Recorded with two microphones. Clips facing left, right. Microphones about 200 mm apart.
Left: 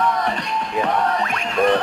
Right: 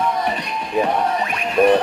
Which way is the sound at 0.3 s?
10° right (ahead or behind).